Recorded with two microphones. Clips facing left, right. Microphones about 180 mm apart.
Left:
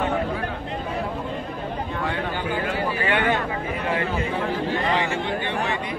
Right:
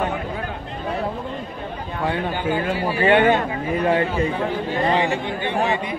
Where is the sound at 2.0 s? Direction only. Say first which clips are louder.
Right 7 dB; 25° right (ahead or behind).